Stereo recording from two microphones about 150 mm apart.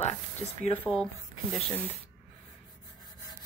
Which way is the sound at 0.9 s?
15° left (ahead or behind).